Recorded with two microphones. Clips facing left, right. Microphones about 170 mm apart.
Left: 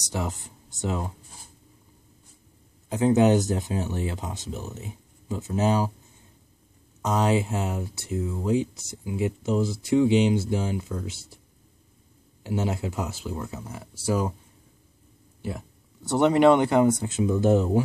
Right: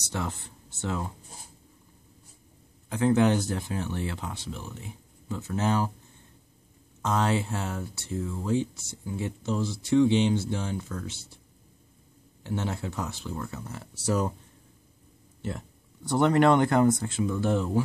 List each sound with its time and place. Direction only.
0.0 s speech: 15° left (ahead or behind)
2.9 s speech: 20° left (ahead or behind)
7.0 s speech: 15° left (ahead or behind)
12.4 s speech: 15° left (ahead or behind)
15.4 s speech: 10° left (ahead or behind)
17.0 s speech: 20° left (ahead or behind)